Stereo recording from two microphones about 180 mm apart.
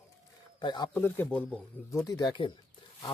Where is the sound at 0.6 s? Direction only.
25° left (ahead or behind).